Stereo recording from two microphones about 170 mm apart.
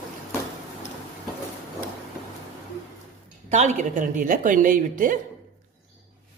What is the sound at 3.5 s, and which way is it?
A woman's voice, 45° right (ahead or behind).